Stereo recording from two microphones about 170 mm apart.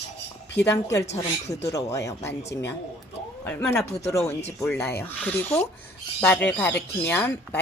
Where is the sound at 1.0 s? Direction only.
40° left (ahead or behind).